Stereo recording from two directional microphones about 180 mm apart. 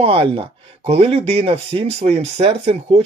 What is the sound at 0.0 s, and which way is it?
Speech, 30° right (ahead or behind).